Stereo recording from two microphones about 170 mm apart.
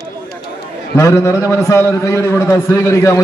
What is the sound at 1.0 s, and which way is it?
A man's voice, 20° left (ahead or behind).